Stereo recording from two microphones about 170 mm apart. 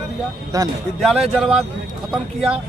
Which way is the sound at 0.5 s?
20° right (ahead or behind).